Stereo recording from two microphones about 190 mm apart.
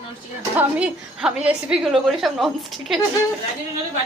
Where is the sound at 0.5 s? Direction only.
10° right (ahead or behind).